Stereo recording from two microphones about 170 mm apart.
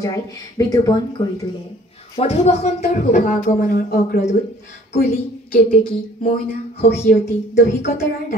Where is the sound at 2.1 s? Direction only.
40° left (ahead or behind); by 4.2 s 55° left (ahead or behind).